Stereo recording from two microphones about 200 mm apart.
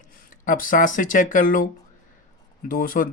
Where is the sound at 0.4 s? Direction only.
40° left (ahead or behind).